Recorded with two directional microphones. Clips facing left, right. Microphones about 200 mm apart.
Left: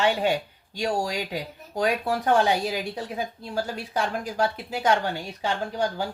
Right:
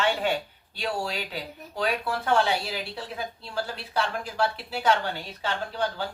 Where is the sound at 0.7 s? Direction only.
45° left (ahead or behind).